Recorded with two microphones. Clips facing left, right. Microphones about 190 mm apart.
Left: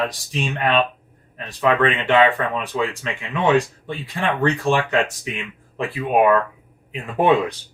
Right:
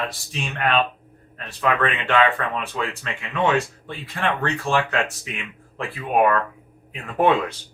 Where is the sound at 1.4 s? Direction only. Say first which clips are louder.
Left 4 dB; 15° left (ahead or behind).